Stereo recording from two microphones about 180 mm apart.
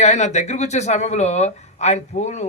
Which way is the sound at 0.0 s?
40° left (ahead or behind).